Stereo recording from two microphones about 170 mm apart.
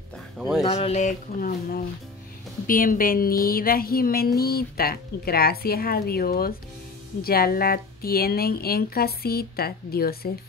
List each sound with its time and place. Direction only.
0.7 s speech: 40° left (ahead or behind); by 10.3 s 65° left (ahead or behind)